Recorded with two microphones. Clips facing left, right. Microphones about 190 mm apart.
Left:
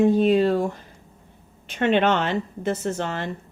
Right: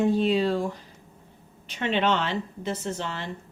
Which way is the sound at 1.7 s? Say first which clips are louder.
Left 5 dB; 55° left (ahead or behind).